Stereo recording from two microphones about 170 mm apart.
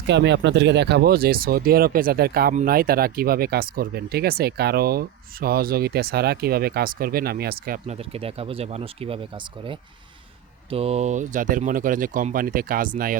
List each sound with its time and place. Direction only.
0.1 s speech: 90° right; by 7.8 s 65° right (ahead or behind)
7.9 s speech: 35° right (ahead or behind); by 13.1 s 55° right (ahead or behind)